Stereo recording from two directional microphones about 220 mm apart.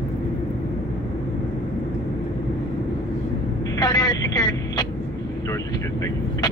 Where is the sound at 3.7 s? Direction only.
20° left (ahead or behind).